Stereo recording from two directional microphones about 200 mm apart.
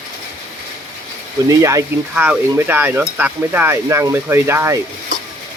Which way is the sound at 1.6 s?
15° right (ahead or behind).